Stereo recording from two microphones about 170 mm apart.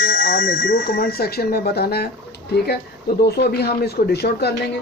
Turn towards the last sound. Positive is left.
turn(degrees=75)  # may be behind; listen again after turning